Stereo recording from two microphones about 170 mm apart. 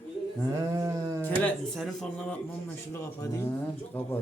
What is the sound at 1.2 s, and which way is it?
Speech, 5° left (ahead or behind).